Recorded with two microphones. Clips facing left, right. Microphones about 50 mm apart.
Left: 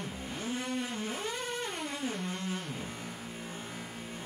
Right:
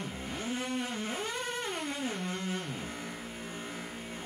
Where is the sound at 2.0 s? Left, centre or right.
Centre.